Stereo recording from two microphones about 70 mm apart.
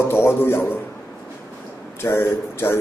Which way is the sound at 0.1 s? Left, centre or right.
Left.